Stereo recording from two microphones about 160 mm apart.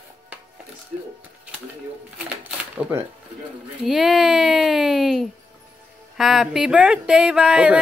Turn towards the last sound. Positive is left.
turn(degrees=-5)  # may be behind; listen again after turning